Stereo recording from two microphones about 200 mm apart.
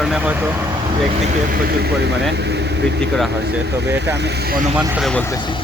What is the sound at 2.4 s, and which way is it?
Vehicle, 55° right (ahead or behind).